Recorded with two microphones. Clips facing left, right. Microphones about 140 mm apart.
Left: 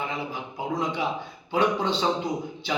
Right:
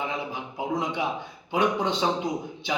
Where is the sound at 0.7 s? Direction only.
20° right (ahead or behind).